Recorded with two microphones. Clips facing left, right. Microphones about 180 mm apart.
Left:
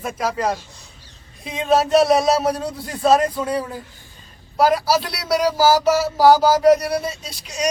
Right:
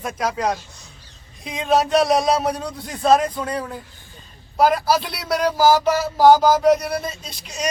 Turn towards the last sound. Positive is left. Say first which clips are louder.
# left 3 dB
turn(degrees=10)  # may be behind; listen again after turning